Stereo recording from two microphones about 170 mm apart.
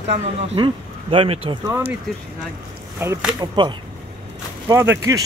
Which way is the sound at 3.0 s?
15° right (ahead or behind).